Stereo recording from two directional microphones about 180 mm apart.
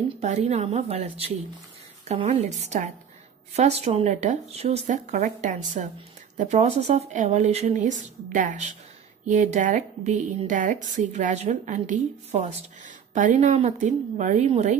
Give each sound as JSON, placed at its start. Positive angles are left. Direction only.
{"t": 0.2, "sound": "a woman's voice", "side_deg": -40}